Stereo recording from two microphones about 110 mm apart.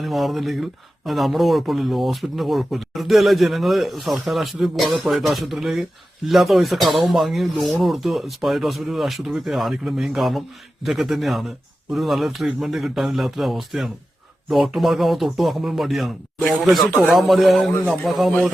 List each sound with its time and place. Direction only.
0.0 s speech: centre (ahead or behind)